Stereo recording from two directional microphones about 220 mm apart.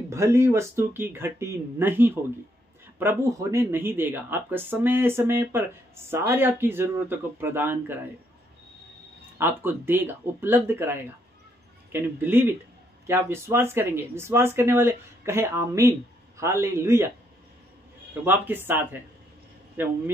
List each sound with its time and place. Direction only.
0.1 s speech: 10° right (ahead or behind)
9.4 s speech: 10° right (ahead or behind)
18.2 s speech: 10° right (ahead or behind)